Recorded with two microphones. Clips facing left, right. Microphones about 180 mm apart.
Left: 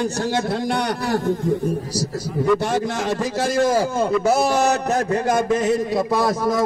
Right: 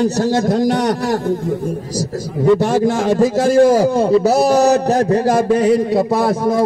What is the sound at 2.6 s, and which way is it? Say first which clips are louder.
A man's voice: right 7 dB; 40° right (ahead or behind).